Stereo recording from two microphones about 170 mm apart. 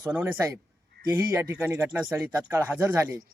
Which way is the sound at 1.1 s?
15° right (ahead or behind).